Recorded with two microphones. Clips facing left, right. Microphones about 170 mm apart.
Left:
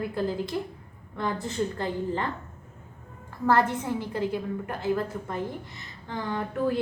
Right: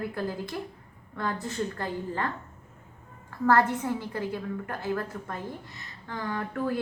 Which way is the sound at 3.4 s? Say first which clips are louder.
Even; 20° left (ahead or behind).